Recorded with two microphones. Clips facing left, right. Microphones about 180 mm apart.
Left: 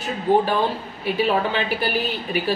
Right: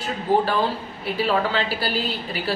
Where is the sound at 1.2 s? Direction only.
20° left (ahead or behind).